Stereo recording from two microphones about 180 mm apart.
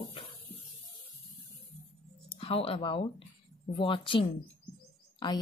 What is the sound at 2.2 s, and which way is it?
A woman's voice, 30° left (ahead or behind).